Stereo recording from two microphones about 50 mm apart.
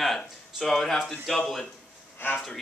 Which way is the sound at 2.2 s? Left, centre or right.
Left.